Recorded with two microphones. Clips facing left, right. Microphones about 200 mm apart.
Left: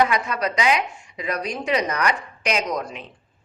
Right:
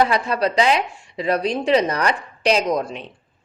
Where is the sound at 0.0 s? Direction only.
30° right (ahead or behind).